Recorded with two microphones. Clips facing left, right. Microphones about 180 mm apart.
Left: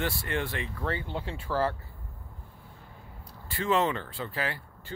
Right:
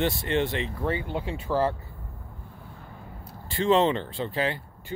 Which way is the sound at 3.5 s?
25° right (ahead or behind).